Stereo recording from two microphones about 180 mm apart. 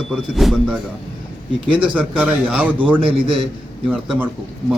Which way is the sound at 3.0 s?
30° right (ahead or behind).